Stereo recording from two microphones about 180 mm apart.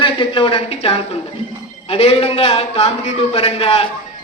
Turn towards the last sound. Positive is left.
turn(degrees=35)  # may be behind; listen again after turning